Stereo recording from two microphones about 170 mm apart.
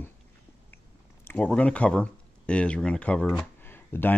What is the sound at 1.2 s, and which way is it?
Speech, 10° left (ahead or behind).